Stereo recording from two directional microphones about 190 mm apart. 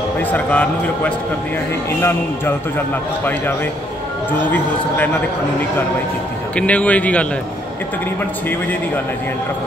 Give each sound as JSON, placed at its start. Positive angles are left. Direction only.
{"t": 0.2, "sound": "speech", "side_deg": 10}
{"t": 4.3, "sound": "speech", "side_deg": 10}
{"t": 6.5, "sound": "speech", "side_deg": 5}